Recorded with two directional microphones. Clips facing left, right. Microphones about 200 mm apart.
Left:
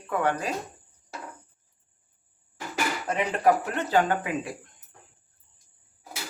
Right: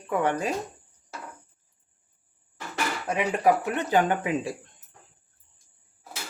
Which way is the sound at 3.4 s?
15° right (ahead or behind).